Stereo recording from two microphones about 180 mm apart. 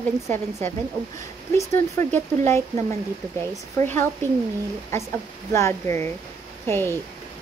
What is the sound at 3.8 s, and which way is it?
Speech, 15° left (ahead or behind).